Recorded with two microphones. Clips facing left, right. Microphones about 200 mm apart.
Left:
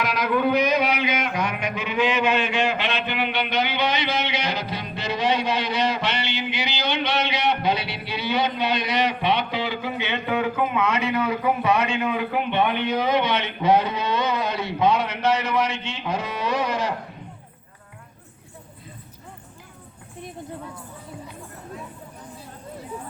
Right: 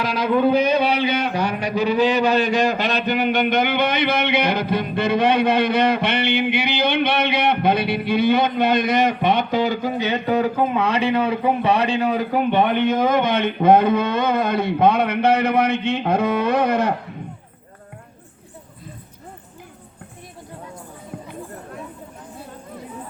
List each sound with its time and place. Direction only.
0.0 s speech: 30° right (ahead or behind); by 16.9 s 55° right (ahead or behind)